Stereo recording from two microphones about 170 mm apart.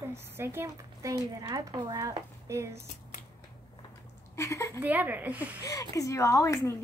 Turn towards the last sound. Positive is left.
turn(degrees=20)  # may be behind; listen again after turning